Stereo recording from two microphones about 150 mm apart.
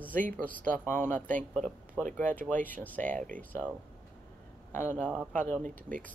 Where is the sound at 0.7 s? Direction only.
10° left (ahead or behind).